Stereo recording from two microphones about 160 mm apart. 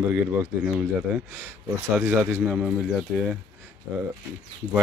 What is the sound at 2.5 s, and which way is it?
Speech, 5° right (ahead or behind).